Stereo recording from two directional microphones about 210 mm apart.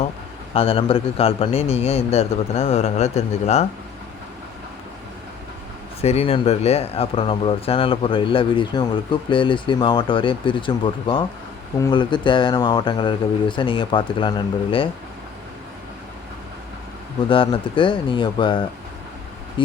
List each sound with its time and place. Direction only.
0.5 s speech: 25° left (ahead or behind)
6.0 s speech: 30° left (ahead or behind)
17.2 s speech: 25° left (ahead or behind)